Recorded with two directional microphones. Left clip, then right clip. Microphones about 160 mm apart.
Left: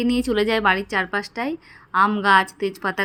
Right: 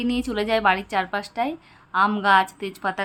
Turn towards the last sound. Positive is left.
turn(degrees=10)  # may be behind; listen again after turning